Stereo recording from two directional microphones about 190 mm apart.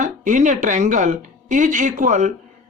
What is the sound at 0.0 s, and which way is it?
Speech, 40° right (ahead or behind).